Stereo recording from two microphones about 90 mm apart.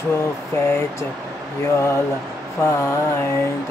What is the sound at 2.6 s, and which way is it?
Mantra, 30° left (ahead or behind).